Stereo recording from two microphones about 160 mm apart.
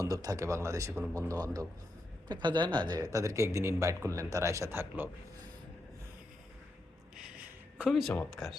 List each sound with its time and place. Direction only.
0.0 s a man's voice: 25° right (ahead or behind)
7.2 s a sound: 5° right (ahead or behind)
8.1 s speech: 5° left (ahead or behind)